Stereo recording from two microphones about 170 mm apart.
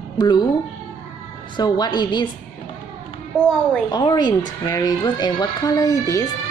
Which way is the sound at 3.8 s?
25° left (ahead or behind).